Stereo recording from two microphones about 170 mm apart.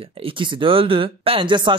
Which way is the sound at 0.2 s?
30° right (ahead or behind).